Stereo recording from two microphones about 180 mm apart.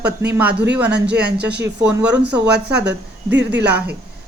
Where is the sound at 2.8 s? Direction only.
75° right (ahead or behind).